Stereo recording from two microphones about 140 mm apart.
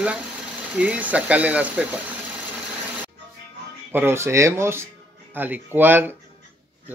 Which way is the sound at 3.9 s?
20° right (ahead or behind).